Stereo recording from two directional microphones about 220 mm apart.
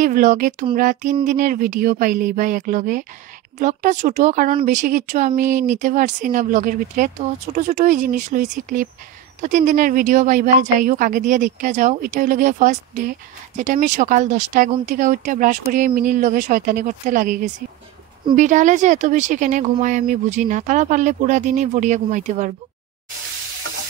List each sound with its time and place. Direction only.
0.0 s speech: 35° right (ahead or behind)